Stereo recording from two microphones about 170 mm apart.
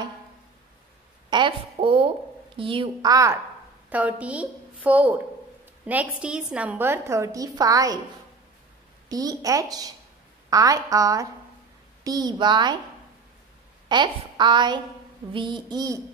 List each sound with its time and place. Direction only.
1.3 s a woman's voice: 30° right (ahead or behind)
3.9 s a woman's voice: 10° right (ahead or behind)
9.1 s a woman's voice: 20° right (ahead or behind)
13.8 s a woman's voice: 25° right (ahead or behind)